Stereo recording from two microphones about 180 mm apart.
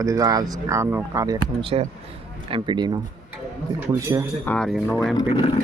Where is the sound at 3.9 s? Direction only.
20° right (ahead or behind).